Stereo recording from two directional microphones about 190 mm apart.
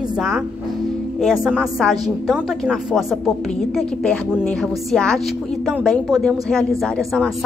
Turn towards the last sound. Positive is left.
turn(degrees=0)  # may be behind; listen again after turning